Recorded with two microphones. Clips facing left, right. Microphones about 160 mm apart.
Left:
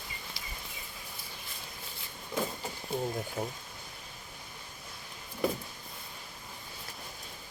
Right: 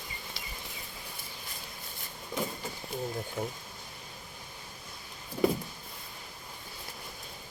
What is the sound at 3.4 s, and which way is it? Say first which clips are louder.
Speech: right 2 dB; 10° left (ahead or behind).